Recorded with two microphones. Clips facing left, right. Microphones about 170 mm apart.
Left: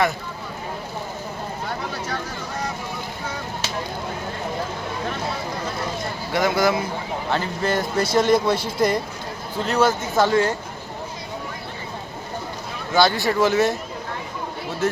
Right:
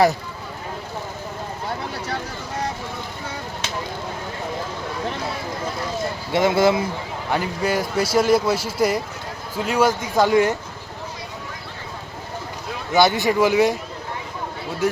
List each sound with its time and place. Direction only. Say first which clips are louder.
6.3 s speech: right 3 dB; 25° right (ahead or behind)
7.3 s speech: right 1 dB; 10° right (ahead or behind)
12.9 s speech: right 2 dB; 20° right (ahead or behind)